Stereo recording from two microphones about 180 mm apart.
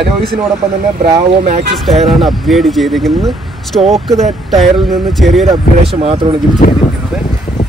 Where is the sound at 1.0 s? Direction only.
40° right (ahead or behind).